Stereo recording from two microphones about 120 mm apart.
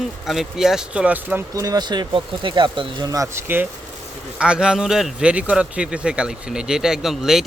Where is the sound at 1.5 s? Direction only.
30° right (ahead or behind).